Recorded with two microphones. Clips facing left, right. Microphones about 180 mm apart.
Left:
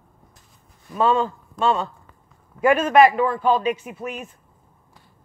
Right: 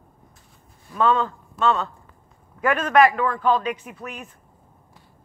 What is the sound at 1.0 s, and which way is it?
Speech, 25° left (ahead or behind).